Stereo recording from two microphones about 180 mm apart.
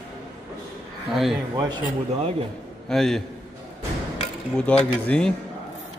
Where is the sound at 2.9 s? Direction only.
Centre (ahead or behind).